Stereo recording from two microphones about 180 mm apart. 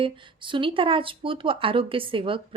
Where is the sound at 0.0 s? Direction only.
30° right (ahead or behind).